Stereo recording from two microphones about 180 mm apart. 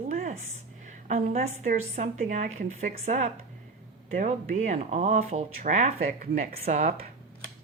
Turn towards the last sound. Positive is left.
turn(degrees=-45)  # may be behind; listen again after turning